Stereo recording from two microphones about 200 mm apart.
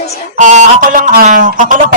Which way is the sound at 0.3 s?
40° right (ahead or behind).